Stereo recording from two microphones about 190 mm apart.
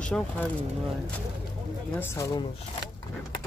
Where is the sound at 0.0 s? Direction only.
5° left (ahead or behind).